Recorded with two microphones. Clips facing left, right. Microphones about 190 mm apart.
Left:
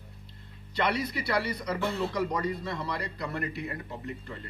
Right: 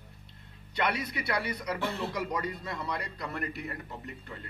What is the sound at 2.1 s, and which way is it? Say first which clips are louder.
Speech: left 4 dB; centre (ahead or behind).